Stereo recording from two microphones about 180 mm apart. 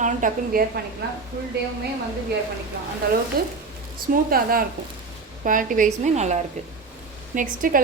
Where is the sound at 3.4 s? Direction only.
55° right (ahead or behind).